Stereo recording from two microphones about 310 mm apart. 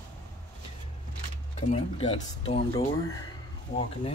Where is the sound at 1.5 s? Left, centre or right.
Centre.